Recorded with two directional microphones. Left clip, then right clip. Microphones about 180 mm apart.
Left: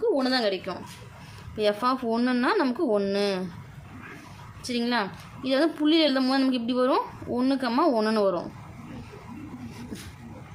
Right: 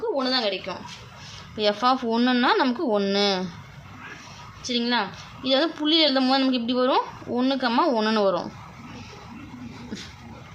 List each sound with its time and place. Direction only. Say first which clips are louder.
0.2 s speech: right 1 dB; 30° left (ahead or behind)
1.5 s speech: right 3 dB; 5° left (ahead or behind)
4.6 s a woman's voice: right 3 dB; 15° left (ahead or behind)